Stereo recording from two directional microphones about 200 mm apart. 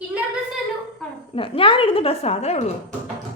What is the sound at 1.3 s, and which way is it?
A woman's voice, 25° left (ahead or behind).